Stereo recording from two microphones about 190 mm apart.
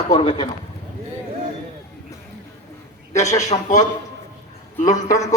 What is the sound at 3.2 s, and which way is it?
Speech, 35° left (ahead or behind).